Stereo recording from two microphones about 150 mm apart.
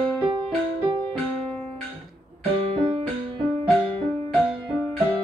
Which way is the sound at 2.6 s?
40° right (ahead or behind).